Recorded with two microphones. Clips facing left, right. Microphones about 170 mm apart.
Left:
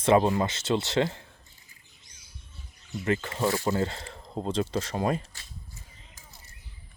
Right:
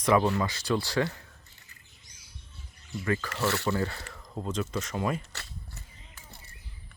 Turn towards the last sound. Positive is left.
turn(degrees=-70)  # may be behind; listen again after turning